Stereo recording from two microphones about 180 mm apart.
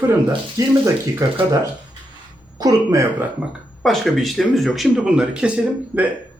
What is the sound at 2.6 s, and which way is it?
Speech, 20° right (ahead or behind).